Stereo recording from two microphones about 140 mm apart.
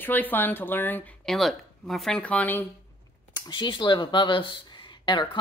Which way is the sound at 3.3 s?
35° left (ahead or behind).